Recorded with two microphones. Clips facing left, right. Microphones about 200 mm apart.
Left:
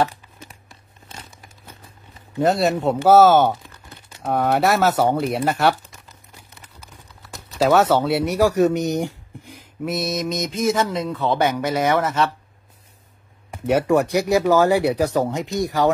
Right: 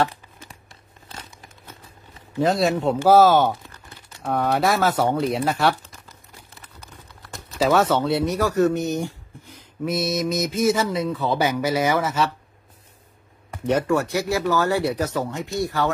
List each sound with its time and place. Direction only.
2.4 s speech: centre (ahead or behind)
7.3 s typing: centre (ahead or behind)
7.9 s speech: 5° left (ahead or behind)
9.8 s speech: centre (ahead or behind)
13.7 s speech: 10° left (ahead or behind)